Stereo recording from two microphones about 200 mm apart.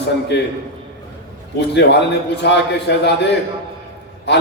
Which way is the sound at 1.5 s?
60° left (ahead or behind).